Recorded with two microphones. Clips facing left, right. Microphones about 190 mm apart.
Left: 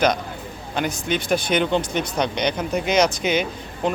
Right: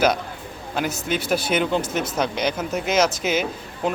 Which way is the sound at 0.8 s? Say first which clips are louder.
Left 1 dB; 5° right (ahead or behind).